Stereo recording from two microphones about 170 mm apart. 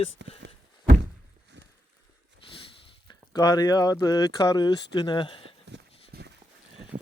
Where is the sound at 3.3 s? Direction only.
20° left (ahead or behind).